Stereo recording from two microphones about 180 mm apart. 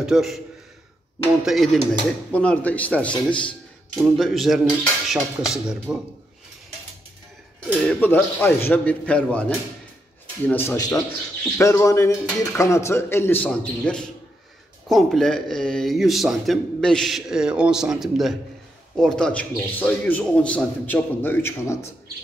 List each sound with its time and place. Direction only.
0.0 s speech: centre (ahead or behind)
1.4 s a man's voice: centre (ahead or behind)
7.9 s a man's voice: 10° left (ahead or behind)